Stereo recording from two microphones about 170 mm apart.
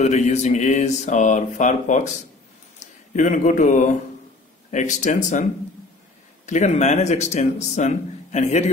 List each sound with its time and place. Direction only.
0.0 s a man's voice: 40° left (ahead or behind)
6.4 s a man's voice: 45° left (ahead or behind)